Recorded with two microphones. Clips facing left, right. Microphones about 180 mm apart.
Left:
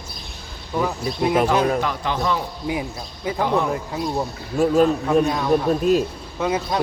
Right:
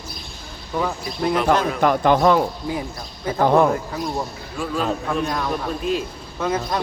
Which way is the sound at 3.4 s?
55° right (ahead or behind).